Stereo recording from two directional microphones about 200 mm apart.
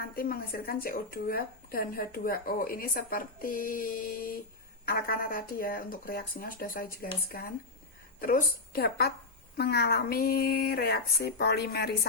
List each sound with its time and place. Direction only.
0.2 s speech: 50° left (ahead or behind)